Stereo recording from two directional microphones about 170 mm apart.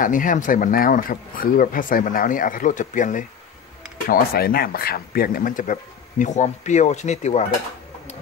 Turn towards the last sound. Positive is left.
turn(degrees=40)  # may be behind; listen again after turning